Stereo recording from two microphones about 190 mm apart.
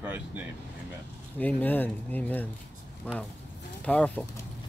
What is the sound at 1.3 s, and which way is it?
Speech, 10° left (ahead or behind).